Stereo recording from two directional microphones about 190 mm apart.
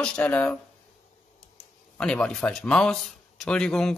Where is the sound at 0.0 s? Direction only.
5° left (ahead or behind).